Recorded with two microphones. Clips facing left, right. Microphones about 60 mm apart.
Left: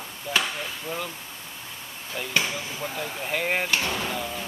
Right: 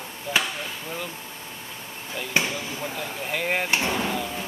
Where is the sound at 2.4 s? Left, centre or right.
Centre.